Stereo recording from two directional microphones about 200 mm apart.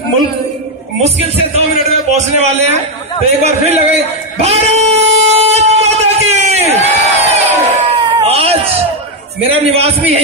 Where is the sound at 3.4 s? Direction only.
30° right (ahead or behind).